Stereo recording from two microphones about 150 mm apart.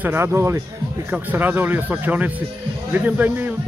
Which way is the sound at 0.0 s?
15° right (ahead or behind).